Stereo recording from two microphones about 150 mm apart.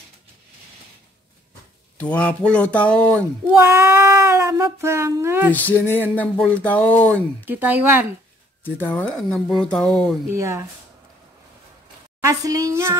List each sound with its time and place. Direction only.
2.0 s speech: 10° left (ahead or behind)
3.5 s speech: 15° right (ahead or behind)
5.5 s speech: 10° left (ahead or behind)
7.4 s speech: 10° right (ahead or behind)
8.6 s speech: 15° left (ahead or behind)
10.3 s a woman's voice: 20° right (ahead or behind)
12.2 s a woman's voice: 20° right (ahead or behind)